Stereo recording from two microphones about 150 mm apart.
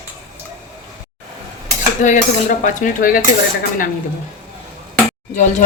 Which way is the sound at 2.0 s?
55° left (ahead or behind).